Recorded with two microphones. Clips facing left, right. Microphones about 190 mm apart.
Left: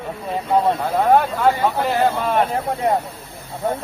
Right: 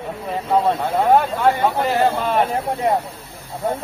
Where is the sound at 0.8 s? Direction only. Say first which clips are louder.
Even; centre (ahead or behind).